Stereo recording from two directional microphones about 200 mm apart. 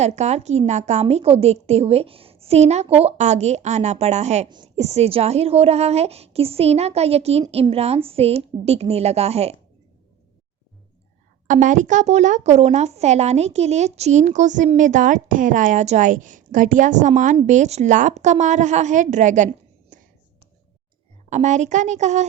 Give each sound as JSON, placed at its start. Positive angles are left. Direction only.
{"t": 0.0, "sound": "speech", "side_deg": -35}
{"t": 11.4, "sound": "speech", "side_deg": -40}
{"t": 19.9, "sound": "whispering", "side_deg": -40}
{"t": 21.2, "sound": "speech", "side_deg": -35}